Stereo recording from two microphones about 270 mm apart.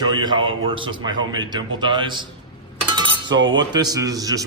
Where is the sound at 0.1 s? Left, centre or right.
Centre.